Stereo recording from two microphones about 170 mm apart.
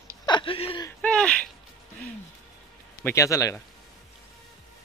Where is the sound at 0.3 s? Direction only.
30° left (ahead or behind).